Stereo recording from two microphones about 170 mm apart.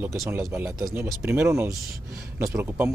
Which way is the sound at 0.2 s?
15° right (ahead or behind).